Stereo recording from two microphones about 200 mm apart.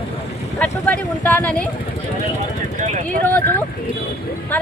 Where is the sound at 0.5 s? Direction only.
10° left (ahead or behind).